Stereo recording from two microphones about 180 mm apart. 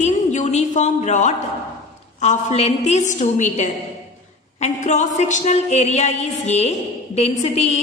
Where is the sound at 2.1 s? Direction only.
40° left (ahead or behind).